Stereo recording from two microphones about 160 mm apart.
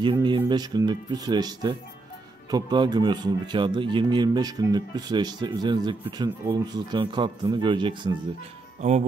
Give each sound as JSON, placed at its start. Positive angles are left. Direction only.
{"t": 0.0, "sound": "speech", "side_deg": -30}
{"t": 8.8, "sound": "speech", "side_deg": -45}